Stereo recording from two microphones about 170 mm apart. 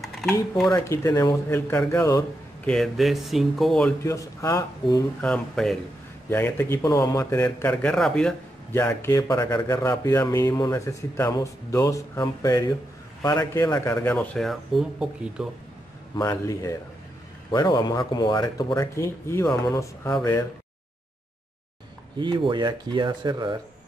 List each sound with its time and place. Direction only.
0.0 s a sound: centre (ahead or behind)
0.7 s speech: 15° left (ahead or behind)
2.6 s speech: centre (ahead or behind)
4.0 s speech: 15° left (ahead or behind)
5.2 s speech: 5° left (ahead or behind)
16.2 s speech: 20° left (ahead or behind)
22.2 s speech: 25° right (ahead or behind)